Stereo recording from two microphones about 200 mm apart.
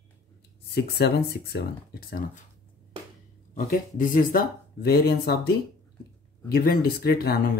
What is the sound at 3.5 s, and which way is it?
Speech, 45° left (ahead or behind).